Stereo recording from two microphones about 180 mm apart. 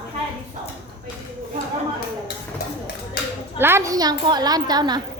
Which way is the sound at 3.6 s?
15° right (ahead or behind).